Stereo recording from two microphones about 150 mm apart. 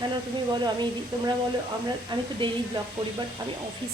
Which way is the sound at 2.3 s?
30° right (ahead or behind).